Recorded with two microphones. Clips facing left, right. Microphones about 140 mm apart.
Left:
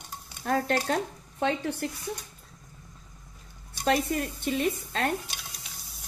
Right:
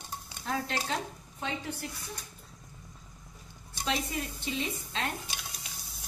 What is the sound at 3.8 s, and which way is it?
A woman's voice, 55° left (ahead or behind).